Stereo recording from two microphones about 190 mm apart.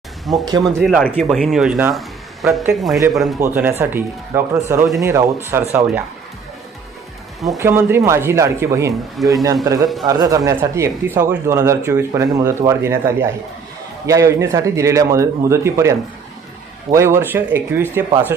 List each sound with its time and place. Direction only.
0.3 s speech: centre (ahead or behind)
3.4 s speech: 10° right (ahead or behind)
7.6 s speech: 10° right (ahead or behind)
8.9 s speech: centre (ahead or behind)
9.3 s speech: 20° right (ahead or behind)